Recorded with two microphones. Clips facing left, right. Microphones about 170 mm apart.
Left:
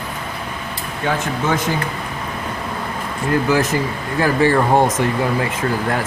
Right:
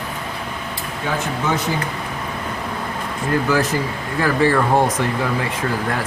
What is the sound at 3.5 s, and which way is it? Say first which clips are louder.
Speech: left 2 dB; 20° left (ahead or behind).